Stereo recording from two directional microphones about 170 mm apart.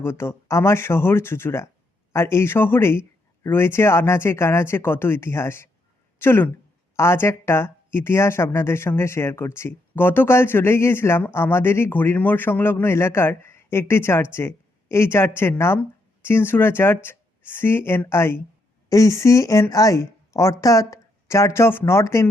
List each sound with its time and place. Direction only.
0.0 s speech: 15° left (ahead or behind)